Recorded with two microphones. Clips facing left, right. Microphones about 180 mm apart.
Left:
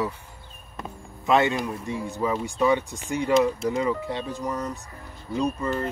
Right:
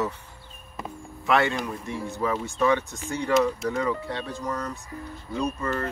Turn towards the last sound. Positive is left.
turn(degrees=15)  # may be behind; listen again after turning